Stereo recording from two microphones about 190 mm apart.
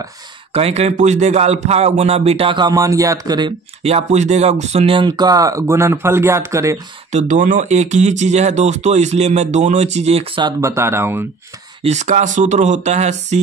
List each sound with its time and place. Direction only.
0.5 s speech: 30° right (ahead or behind); by 6.8 s 15° right (ahead or behind)
7.1 s speech: 40° right (ahead or behind)
10.6 s speech: 15° right (ahead or behind)
11.8 s speech: 35° right (ahead or behind)